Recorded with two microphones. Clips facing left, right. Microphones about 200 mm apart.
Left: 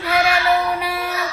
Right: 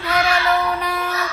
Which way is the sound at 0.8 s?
10° left (ahead or behind).